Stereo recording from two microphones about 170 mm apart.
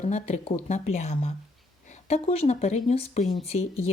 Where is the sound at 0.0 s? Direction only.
45° left (ahead or behind).